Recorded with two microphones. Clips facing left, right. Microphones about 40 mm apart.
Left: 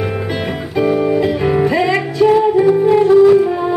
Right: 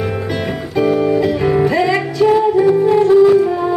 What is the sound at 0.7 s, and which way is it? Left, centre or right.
Music, centre.